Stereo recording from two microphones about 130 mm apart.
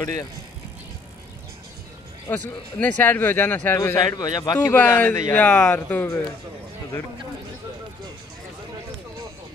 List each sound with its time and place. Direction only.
2.3 s a man's voice: 15° left (ahead or behind); by 4.6 s 30° left (ahead or behind)
4.6 s a man's voice: 15° left (ahead or behind)